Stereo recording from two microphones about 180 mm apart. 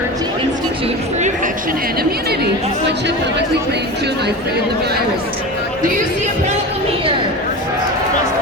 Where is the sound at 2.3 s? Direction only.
70° right (ahead or behind).